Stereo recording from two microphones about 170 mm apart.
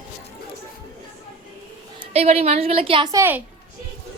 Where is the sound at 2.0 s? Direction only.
35° right (ahead or behind).